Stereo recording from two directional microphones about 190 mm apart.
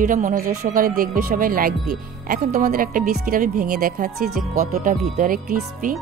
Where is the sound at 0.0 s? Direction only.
45° right (ahead or behind).